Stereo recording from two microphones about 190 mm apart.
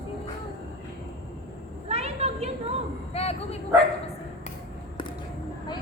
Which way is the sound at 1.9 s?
35° right (ahead or behind).